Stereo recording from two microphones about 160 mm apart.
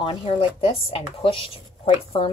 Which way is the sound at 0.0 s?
35° left (ahead or behind).